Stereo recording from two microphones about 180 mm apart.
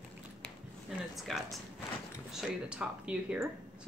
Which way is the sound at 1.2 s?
Centre (ahead or behind).